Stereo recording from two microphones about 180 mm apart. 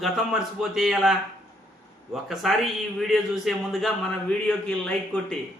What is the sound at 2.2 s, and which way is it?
A man's voice, centre (ahead or behind).